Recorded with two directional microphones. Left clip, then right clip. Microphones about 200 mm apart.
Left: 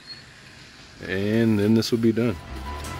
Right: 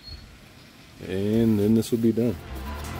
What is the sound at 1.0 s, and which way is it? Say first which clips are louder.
Speech: left 1 dB; 5° right (ahead or behind).